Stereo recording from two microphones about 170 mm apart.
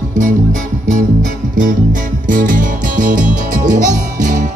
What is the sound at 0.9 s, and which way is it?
Music, 50° right (ahead or behind).